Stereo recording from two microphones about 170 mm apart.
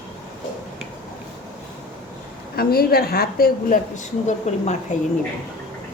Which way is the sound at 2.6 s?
65° left (ahead or behind).